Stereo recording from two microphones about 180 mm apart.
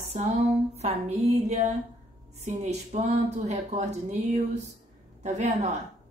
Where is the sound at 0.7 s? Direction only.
35° right (ahead or behind).